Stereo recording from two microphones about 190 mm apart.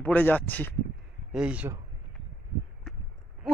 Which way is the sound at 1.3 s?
5° right (ahead or behind).